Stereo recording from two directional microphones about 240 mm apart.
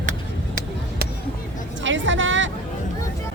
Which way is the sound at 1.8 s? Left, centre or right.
Right.